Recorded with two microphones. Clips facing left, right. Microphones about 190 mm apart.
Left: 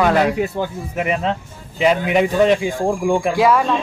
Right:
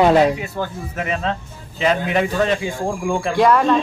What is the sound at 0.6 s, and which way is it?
A man's voice, 15° left (ahead or behind).